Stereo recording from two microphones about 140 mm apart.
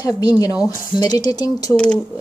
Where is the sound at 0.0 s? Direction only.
30° left (ahead or behind).